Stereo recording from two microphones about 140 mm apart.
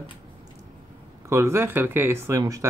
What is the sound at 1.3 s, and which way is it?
Speech, 20° right (ahead or behind).